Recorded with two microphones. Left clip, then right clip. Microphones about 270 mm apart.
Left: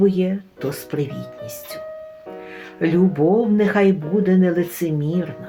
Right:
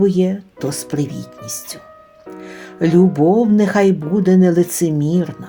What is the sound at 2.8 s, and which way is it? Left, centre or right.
Speech, right.